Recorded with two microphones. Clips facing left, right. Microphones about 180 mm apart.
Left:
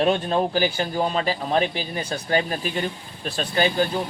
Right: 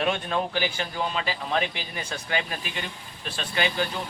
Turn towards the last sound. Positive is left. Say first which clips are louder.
# left 6 dB
turn(degrees=40)  # may be behind; listen again after turning